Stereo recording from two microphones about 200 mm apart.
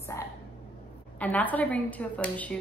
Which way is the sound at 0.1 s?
15° left (ahead or behind).